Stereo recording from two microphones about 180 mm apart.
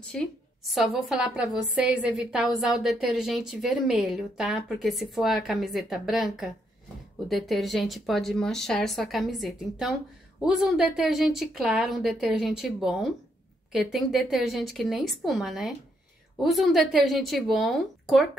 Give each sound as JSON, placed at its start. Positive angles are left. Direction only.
{"t": 0.1, "sound": "a woman's voice", "side_deg": 5}